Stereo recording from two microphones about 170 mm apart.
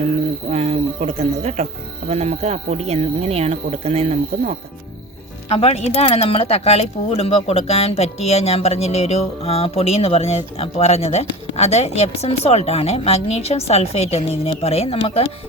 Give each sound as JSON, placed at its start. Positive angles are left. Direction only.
{"t": 0.5, "sound": "speech", "side_deg": -35}
{"t": 5.5, "sound": "speech", "side_deg": 40}